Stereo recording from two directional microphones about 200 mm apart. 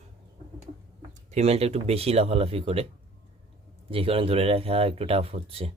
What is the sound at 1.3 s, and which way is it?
Speech, 30° right (ahead or behind).